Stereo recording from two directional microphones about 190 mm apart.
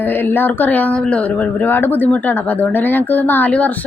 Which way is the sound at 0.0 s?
10° left (ahead or behind).